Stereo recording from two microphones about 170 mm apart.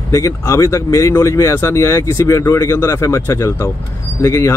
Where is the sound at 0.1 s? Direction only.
20° left (ahead or behind).